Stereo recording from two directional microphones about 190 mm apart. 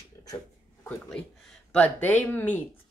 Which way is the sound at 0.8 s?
5° left (ahead or behind).